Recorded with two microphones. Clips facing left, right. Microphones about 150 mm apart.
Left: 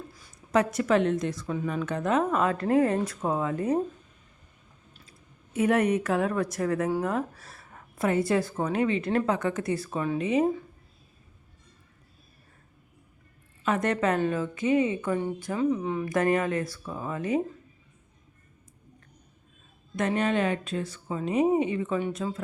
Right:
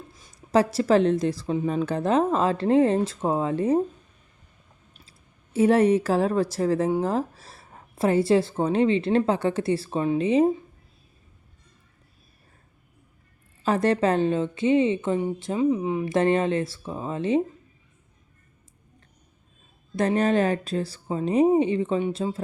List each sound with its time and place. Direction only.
0.1 s a woman's voice: 25° right (ahead or behind)
5.5 s a woman's voice: 30° right (ahead or behind)
13.7 s a woman's voice: 30° right (ahead or behind)
20.0 s speech: 35° right (ahead or behind)